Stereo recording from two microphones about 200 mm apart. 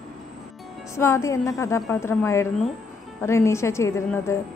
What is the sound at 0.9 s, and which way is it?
A woman's voice, 15° left (ahead or behind).